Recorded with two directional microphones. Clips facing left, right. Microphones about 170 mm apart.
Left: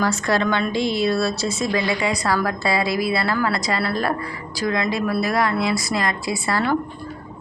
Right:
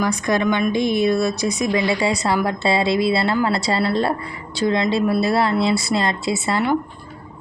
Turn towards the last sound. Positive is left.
turn(degrees=-20)  # may be behind; listen again after turning